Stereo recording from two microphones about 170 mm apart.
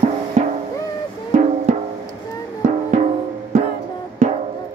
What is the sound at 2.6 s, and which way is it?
Music, 45° right (ahead or behind).